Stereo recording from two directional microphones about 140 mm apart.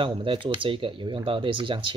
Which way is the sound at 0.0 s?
35° right (ahead or behind).